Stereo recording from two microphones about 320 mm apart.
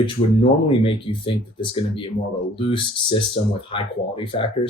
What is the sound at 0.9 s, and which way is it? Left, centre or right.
Speech, centre.